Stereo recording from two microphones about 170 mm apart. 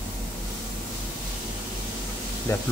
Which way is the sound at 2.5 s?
15° left (ahead or behind).